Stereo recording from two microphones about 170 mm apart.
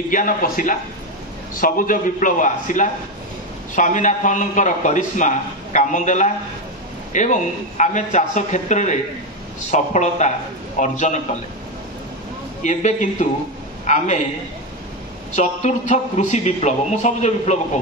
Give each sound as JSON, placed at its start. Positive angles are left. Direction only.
{"t": 0.1, "sound": "a man's voice", "side_deg": 50}
{"t": 12.6, "sound": "a man's voice", "side_deg": 45}
{"t": 15.3, "sound": "a man's voice", "side_deg": 45}